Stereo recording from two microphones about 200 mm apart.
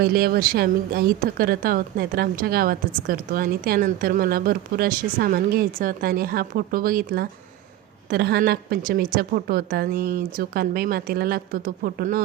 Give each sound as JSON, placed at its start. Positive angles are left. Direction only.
{"t": 0.0, "sound": "speech", "side_deg": -50}